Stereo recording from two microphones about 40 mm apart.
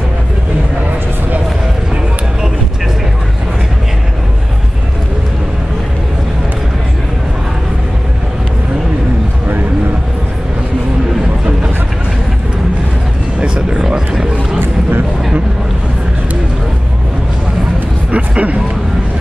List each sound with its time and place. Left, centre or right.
13.6 s vehicle: right
13.8 s a sound: centre
14.6 s vehicle: right
18.1 s music: right